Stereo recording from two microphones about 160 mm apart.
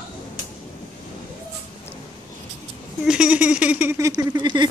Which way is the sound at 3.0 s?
5° right (ahead or behind).